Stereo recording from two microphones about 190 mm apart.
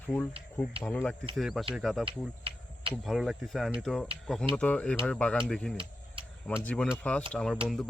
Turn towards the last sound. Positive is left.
turn(degrees=0)  # may be behind; listen again after turning